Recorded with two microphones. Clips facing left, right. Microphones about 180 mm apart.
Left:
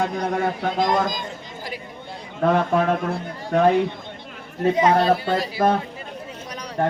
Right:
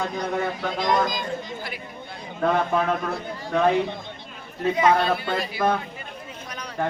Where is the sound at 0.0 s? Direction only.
50° left (ahead or behind).